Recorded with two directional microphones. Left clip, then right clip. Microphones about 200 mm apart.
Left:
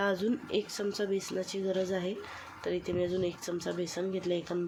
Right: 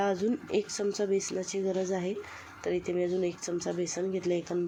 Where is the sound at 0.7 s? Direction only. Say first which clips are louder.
Right 3 dB; 35° right (ahead or behind).